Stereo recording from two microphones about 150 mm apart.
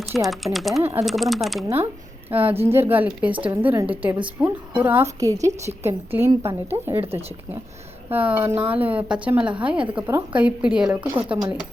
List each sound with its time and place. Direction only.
0.0 s speech: centre (ahead or behind)
2.3 s a woman's voice: 15° right (ahead or behind)
8.1 s speech: 10° right (ahead or behind)
11.0 s a woman's voice: 20° right (ahead or behind)